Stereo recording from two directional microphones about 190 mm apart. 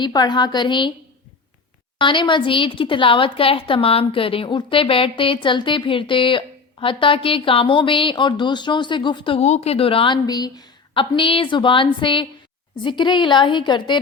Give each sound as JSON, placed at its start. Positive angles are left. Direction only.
{"t": 0.0, "sound": "a woman's voice", "side_deg": 25}
{"t": 2.0, "sound": "a woman's voice", "side_deg": 25}